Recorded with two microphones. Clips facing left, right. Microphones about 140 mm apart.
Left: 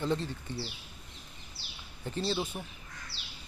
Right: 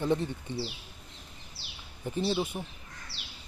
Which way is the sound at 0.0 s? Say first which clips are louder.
Right 3 dB; 15° right (ahead or behind).